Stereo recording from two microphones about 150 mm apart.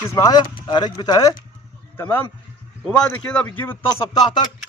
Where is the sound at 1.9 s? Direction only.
15° left (ahead or behind).